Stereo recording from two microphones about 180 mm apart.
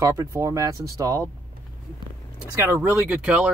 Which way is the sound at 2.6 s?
15° right (ahead or behind).